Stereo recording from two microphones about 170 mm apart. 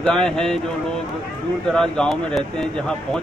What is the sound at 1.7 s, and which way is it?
Speech, 5° left (ahead or behind).